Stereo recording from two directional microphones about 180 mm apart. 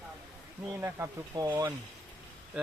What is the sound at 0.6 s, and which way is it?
Speech, 15° right (ahead or behind).